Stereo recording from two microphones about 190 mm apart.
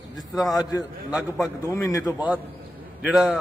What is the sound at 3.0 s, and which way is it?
Speech, 5° right (ahead or behind).